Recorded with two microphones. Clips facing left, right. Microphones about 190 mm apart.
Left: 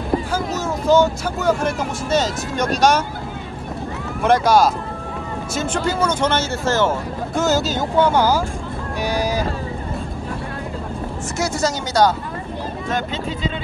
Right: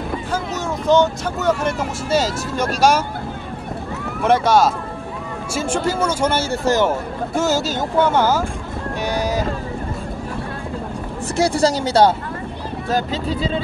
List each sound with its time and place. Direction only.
0.8 s speech: 5° left (ahead or behind)
4.2 s speech: centre (ahead or behind)
11.3 s speech: 30° right (ahead or behind)